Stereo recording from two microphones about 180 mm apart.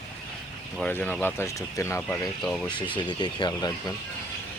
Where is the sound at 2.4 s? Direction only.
5° left (ahead or behind).